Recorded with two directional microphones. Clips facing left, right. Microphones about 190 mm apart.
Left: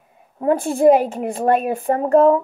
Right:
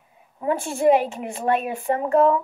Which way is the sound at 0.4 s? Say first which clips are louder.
Left 6 dB; 40° left (ahead or behind).